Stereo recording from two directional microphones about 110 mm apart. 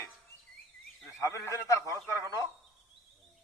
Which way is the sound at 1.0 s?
25° left (ahead or behind).